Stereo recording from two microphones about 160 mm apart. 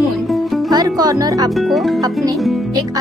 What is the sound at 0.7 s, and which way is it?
Speech, 25° right (ahead or behind).